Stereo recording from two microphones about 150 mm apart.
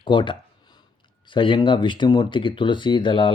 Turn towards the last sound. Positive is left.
turn(degrees=35)  # may be behind; listen again after turning